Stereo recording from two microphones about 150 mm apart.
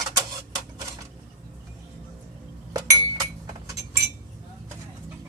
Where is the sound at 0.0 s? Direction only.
25° right (ahead or behind).